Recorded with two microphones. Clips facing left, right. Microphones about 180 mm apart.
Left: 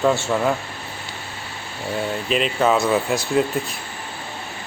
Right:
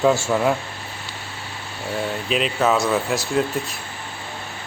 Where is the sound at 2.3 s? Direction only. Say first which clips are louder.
Left 1 dB; centre (ahead or behind).